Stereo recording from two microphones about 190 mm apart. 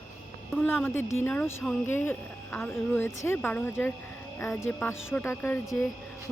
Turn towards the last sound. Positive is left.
turn(degrees=15)  # may be behind; listen again after turning